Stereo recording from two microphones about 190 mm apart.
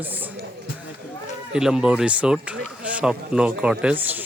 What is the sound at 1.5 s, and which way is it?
A man's voice, 5° right (ahead or behind).